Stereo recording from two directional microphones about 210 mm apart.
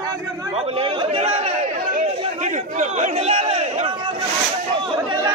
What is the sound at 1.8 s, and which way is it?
Chatter, 40° right (ahead or behind).